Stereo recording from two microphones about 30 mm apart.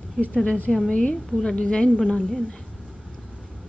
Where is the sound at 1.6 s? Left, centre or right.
Left.